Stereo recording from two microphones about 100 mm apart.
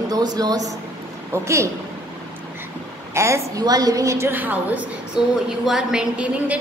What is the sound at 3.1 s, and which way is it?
Speech, 30° right (ahead or behind).